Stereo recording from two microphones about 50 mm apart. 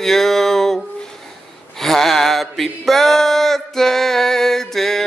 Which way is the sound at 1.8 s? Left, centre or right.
Centre.